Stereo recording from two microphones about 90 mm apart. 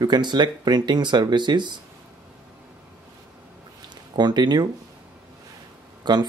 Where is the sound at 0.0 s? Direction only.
55° right (ahead or behind).